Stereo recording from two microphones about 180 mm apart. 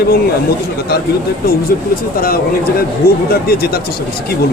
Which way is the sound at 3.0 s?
55° left (ahead or behind).